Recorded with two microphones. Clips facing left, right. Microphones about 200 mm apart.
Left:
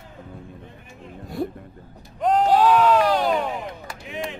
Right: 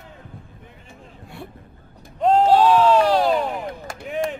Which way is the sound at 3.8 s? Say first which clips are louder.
Right 6 dB; 45° right (ahead or behind).